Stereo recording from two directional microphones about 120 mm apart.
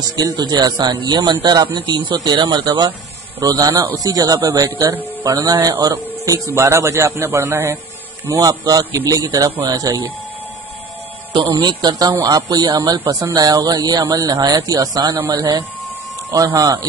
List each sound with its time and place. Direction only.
0.1 s a man's voice: 35° right (ahead or behind)
8.3 s speech: 30° right (ahead or behind)
11.3 s speech: 40° right (ahead or behind)